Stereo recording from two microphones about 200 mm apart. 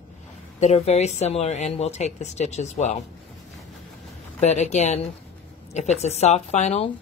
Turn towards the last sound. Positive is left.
turn(degrees=35)  # may be behind; listen again after turning